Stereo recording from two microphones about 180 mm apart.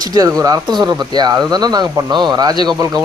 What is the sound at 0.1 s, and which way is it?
Speech, 20° right (ahead or behind).